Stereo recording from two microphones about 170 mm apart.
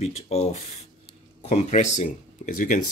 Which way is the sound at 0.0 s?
40° left (ahead or behind).